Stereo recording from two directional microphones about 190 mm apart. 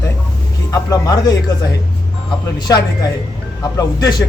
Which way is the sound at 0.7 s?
15° left (ahead or behind).